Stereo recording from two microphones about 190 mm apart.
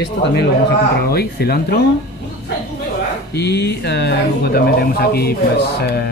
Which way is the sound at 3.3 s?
60° left (ahead or behind).